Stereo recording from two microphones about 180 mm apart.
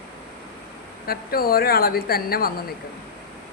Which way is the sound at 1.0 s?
55° left (ahead or behind).